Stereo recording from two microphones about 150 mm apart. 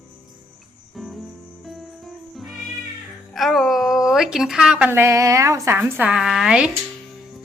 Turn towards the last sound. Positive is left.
turn(degrees=-5)  # may be behind; listen again after turning